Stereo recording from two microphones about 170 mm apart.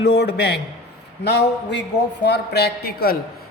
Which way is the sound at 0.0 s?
90° left.